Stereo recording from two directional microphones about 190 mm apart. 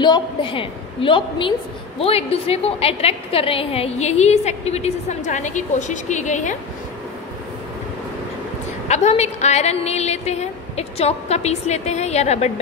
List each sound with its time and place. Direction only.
0.0 s a woman's voice: 25° left (ahead or behind)
8.8 s a woman's voice: 35° left (ahead or behind)